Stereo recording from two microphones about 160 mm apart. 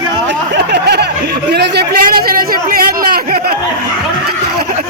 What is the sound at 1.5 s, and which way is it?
A man's voice, 90° right.